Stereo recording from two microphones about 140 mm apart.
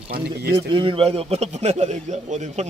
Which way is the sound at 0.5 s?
35° right (ahead or behind).